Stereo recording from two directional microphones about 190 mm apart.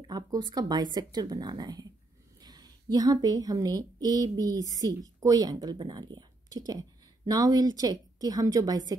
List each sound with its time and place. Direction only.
0.0 s a woman's voice: 20° right (ahead or behind)